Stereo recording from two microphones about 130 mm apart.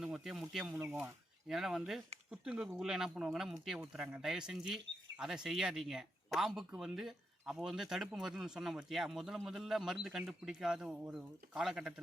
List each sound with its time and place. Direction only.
0.0 s speech: 5° right (ahead or behind)